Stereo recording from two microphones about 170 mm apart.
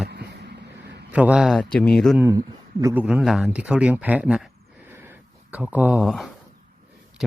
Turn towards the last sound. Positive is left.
turn(degrees=0)  # may be behind; listen again after turning